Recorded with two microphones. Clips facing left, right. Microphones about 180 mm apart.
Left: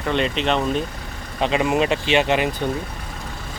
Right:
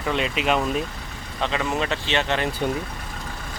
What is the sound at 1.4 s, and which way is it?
Speech, 15° left (ahead or behind).